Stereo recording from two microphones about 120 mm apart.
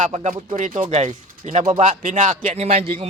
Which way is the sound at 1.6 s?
65° right (ahead or behind).